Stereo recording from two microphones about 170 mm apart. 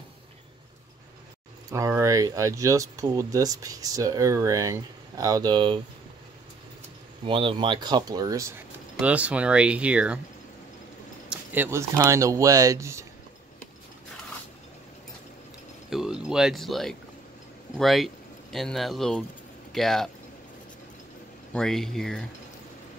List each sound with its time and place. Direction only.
1.7 s speech: 15° right (ahead or behind)
7.2 s speech: 30° right (ahead or behind)
9.0 s speech: 10° right (ahead or behind)
11.2 s a sound: 10° right (ahead or behind)
12.0 s speech: 20° right (ahead or behind)
15.9 s speech: centre (ahead or behind)
21.5 s speech: 5° left (ahead or behind)